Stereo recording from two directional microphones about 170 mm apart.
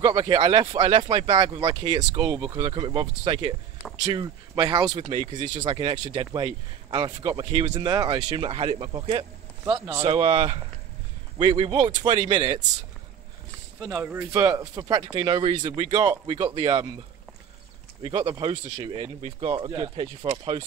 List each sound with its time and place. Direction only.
0.0 s speech: 25° right (ahead or behind)
9.8 s speech: 15° right (ahead or behind)
10.0 s speech: 35° right (ahead or behind)
13.8 s speech: 15° right (ahead or behind)
18.0 s speech: 30° right (ahead or behind)